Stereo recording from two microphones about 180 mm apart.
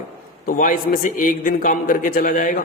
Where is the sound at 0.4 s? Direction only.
50° left (ahead or behind).